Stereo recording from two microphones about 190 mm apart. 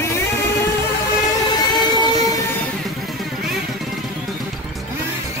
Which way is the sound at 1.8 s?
20° left (ahead or behind).